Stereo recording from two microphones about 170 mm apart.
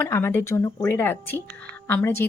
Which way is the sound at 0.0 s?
15° left (ahead or behind).